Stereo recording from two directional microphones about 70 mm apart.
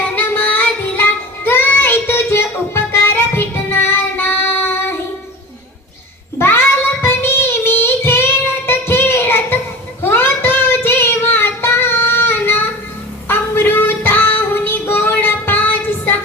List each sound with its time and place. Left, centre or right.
0.2 s music: left
6.4 s child singing: left
8.6 s music: left
10.0 s child singing: left